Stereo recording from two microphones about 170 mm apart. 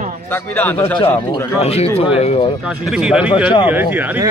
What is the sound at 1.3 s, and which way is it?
Speech, 35° left (ahead or behind).